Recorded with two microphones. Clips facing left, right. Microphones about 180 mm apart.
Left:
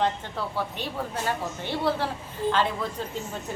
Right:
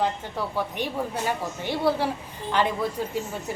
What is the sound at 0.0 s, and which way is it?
A woman's voice, 15° right (ahead or behind).